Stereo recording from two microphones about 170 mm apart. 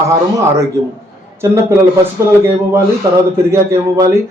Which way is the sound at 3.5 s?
15° right (ahead or behind).